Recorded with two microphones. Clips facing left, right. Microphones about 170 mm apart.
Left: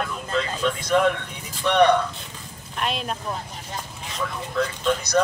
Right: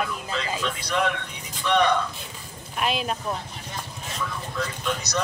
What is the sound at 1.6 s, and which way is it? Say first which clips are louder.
Speech: left 4 dB; 60° left (ahead or behind).